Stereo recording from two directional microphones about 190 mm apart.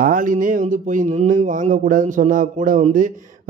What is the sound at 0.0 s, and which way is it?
A man's voice, 45° right (ahead or behind).